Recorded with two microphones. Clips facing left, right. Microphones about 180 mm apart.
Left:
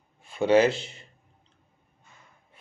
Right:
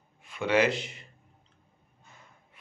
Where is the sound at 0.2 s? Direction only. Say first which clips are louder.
Left 5 dB; 30° left (ahead or behind).